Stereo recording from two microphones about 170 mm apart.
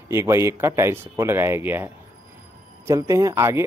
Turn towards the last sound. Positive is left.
turn(degrees=-15)  # may be behind; listen again after turning